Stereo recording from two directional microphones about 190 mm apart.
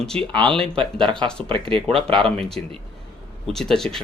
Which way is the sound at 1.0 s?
25° right (ahead or behind).